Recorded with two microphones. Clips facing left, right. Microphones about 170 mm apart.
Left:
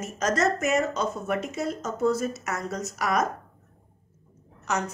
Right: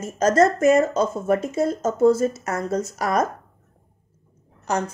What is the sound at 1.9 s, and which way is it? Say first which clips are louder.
A woman's voice: right 8 dB; 30° right (ahead or behind).